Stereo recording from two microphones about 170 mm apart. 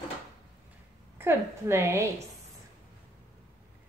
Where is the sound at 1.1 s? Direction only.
15° right (ahead or behind).